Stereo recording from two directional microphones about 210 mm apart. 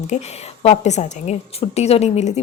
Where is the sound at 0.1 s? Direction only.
30° left (ahead or behind).